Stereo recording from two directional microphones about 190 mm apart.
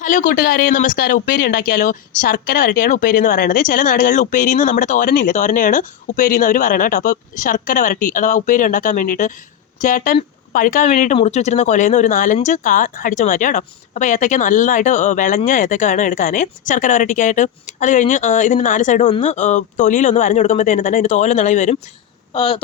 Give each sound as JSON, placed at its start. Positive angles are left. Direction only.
{"t": 0.0, "sound": "speech", "side_deg": 40}
{"t": 22.3, "sound": "speech", "side_deg": 30}